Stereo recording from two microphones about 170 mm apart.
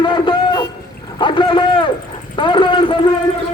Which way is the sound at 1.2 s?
30° left (ahead or behind).